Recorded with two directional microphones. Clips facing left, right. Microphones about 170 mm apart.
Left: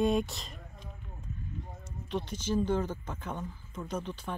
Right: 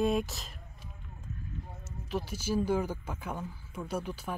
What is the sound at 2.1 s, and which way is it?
Speech, 5° right (ahead or behind).